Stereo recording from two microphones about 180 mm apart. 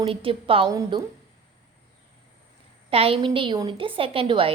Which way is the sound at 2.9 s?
30° right (ahead or behind).